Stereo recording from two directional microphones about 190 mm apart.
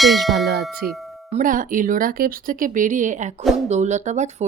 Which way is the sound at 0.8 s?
55° right (ahead or behind).